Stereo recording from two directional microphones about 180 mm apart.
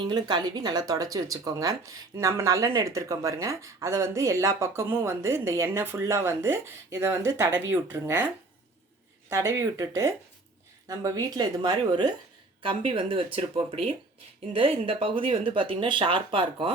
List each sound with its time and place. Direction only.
0.1 s speech: 25° right (ahead or behind)
9.3 s a woman's voice: 15° right (ahead or behind)